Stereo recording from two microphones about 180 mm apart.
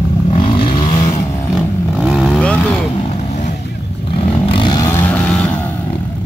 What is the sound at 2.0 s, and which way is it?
Vehicle, centre (ahead or behind).